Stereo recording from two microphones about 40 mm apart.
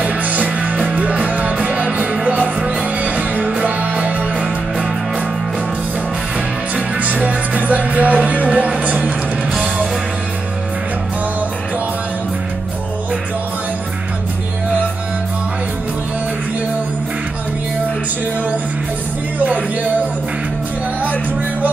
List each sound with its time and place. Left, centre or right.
0.0 s music: right
7.0 s music: right
19.3 s music: right